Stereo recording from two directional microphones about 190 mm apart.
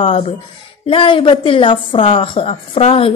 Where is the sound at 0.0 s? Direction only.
35° left (ahead or behind).